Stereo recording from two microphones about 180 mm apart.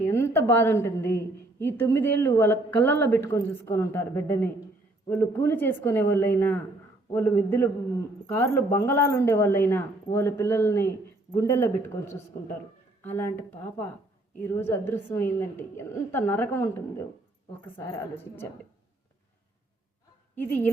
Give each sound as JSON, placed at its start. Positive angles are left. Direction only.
{"t": 0.0, "sound": "a woman's voice", "side_deg": 15}
{"t": 13.1, "sound": "a woman's voice", "side_deg": 15}